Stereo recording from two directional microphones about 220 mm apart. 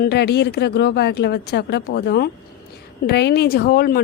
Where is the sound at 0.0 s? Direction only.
45° left (ahead or behind).